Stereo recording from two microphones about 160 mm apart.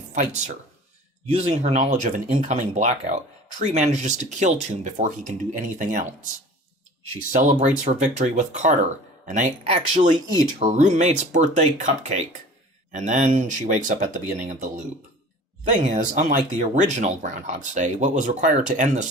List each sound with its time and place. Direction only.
0.1 s speech: 50° right (ahead or behind)
7.6 s speech: 50° right (ahead or behind)